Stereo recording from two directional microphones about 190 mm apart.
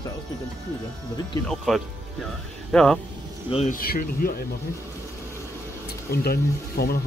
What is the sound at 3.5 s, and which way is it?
Speech, 35° left (ahead or behind).